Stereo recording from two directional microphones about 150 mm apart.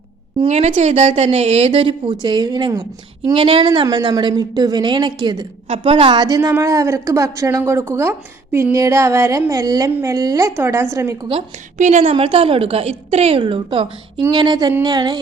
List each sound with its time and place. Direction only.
0.3 s a woman's voice: 45° right (ahead or behind); by 11.3 s 20° right (ahead or behind)
11.8 s a woman's voice: 55° right (ahead or behind)
12.1 s a woman's voice: 35° right (ahead or behind)